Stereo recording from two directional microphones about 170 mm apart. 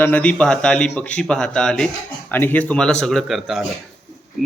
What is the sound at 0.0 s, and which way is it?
Child singing, 10° left (ahead or behind).